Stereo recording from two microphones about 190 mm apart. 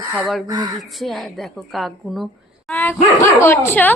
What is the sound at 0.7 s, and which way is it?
Speech, centre (ahead or behind).